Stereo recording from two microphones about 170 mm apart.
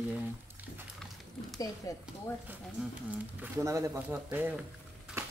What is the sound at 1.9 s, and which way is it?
Speech, 20° left (ahead or behind).